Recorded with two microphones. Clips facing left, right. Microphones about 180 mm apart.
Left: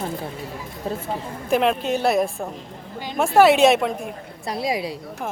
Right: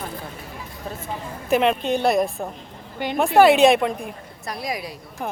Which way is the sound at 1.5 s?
Centre (ahead or behind).